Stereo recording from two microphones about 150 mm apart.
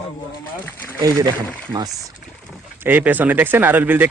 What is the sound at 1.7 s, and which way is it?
Speech, 25° right (ahead or behind).